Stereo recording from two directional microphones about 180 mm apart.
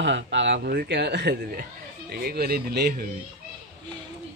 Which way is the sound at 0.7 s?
60° right (ahead or behind).